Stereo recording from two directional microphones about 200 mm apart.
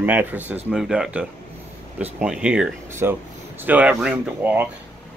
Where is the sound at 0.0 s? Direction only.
10° right (ahead or behind).